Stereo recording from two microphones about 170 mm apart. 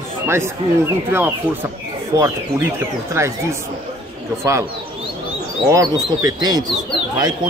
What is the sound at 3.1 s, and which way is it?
Speech, 15° right (ahead or behind).